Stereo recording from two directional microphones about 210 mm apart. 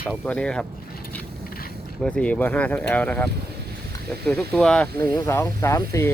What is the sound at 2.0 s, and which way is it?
Speech, 5° left (ahead or behind).